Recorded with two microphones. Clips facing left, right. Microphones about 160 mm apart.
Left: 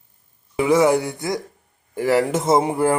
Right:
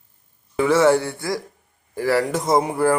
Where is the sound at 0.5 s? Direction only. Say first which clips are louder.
Even; 15° left (ahead or behind).